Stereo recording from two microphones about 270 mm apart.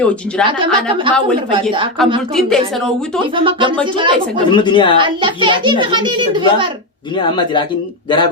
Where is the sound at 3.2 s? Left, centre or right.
Centre.